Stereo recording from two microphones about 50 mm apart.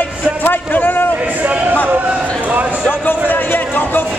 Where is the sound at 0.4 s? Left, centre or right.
Left.